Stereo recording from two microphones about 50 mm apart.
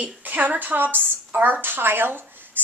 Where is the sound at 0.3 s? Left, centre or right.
Right.